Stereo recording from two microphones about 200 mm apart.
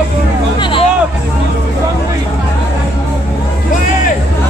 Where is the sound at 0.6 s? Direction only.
25° left (ahead or behind).